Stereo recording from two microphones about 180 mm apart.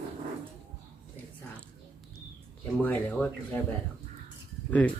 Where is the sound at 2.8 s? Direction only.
10° left (ahead or behind).